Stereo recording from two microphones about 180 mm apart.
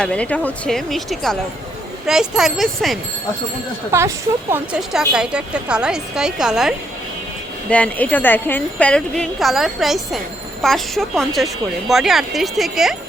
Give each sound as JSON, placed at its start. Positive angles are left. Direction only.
{"t": 0.0, "sound": "a woman's voice", "side_deg": 5}
{"t": 3.9, "sound": "speech", "side_deg": -15}
{"t": 4.8, "sound": "a woman's voice", "side_deg": 0}
{"t": 7.7, "sound": "a woman's voice", "side_deg": 10}